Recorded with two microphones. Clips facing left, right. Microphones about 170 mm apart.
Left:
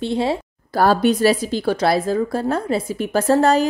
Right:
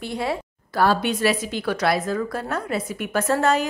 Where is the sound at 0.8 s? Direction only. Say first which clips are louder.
Left 5 dB; 40° left (ahead or behind).